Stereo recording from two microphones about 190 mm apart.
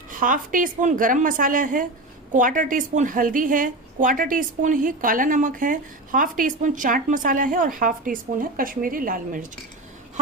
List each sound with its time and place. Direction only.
0.1 s a woman's voice: 45° right (ahead or behind)